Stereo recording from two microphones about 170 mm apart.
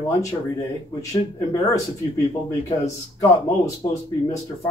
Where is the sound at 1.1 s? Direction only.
20° left (ahead or behind).